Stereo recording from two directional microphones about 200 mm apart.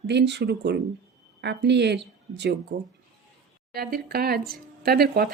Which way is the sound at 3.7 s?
50° right (ahead or behind).